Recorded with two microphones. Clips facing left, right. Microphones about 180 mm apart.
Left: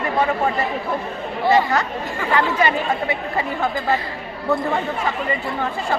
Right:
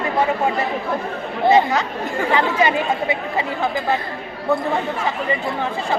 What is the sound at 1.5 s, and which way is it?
Speech, 20° right (ahead or behind).